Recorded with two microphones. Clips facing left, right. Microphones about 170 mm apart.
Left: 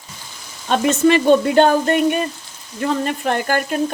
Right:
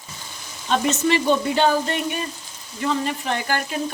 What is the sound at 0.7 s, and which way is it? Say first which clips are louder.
Sizzle: left 5 dB; 55° left (ahead or behind).